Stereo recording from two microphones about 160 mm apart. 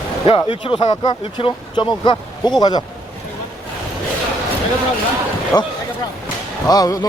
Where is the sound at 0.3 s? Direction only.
35° left (ahead or behind).